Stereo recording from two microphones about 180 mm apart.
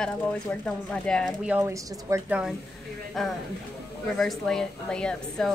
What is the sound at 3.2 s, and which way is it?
A woman's voice, centre (ahead or behind).